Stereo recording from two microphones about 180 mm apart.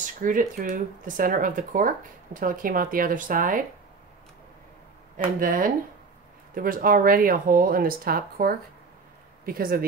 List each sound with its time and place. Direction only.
0.0 s speech: 45° right (ahead or behind)
5.1 s speech: 50° right (ahead or behind)